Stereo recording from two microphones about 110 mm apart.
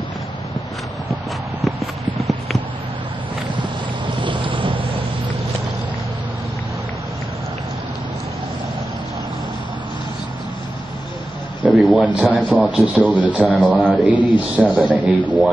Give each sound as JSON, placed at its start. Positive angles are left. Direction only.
{"t": 1.6, "sound": "clip-clop", "side_deg": 0}
{"t": 4.2, "sound": "boat", "side_deg": -50}
{"t": 11.7, "sound": "a sound", "side_deg": 0}
{"t": 12.0, "sound": "a man's voice", "side_deg": -15}
{"t": 13.4, "sound": "a man's voice", "side_deg": 10}
{"t": 13.8, "sound": "a man's voice", "side_deg": -15}